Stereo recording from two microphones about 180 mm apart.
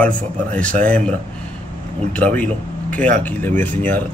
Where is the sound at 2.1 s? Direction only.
10° left (ahead or behind).